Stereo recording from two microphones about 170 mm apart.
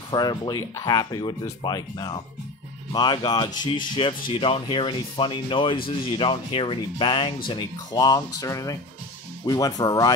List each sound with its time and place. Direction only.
0.1 s speech: 25° left (ahead or behind)